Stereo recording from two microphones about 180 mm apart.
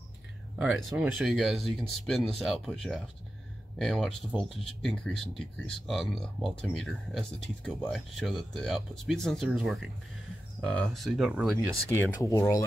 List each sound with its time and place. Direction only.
0.6 s speech: centre (ahead or behind)
12.2 s speech: 20° left (ahead or behind)